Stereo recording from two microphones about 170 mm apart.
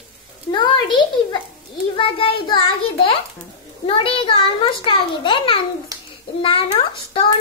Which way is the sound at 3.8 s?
30° left (ahead or behind).